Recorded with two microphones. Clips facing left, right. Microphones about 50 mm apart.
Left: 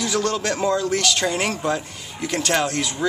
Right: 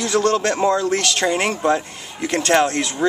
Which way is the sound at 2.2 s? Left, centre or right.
Right.